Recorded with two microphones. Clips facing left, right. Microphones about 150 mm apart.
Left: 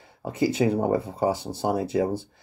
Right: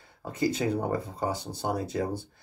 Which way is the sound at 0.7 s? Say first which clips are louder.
Left 5 dB; 25° left (ahead or behind).